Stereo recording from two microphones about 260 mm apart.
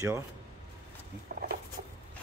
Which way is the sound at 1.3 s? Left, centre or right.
Right.